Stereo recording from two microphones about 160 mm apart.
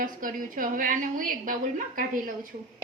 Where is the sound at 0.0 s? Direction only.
60° right (ahead or behind).